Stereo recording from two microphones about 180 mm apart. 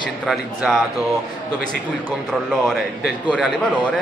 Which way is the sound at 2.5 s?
Centre (ahead or behind).